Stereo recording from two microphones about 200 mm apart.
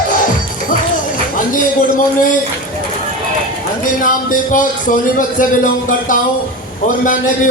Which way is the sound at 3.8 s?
45° left (ahead or behind).